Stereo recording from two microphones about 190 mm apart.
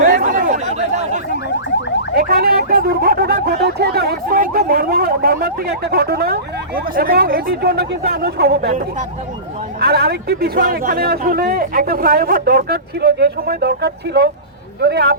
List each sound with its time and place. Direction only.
0.0 s chatter: 45° right (ahead or behind)
2.1 s a man's voice: 55° right (ahead or behind)
9.8 s a man's voice: 55° right (ahead or behind)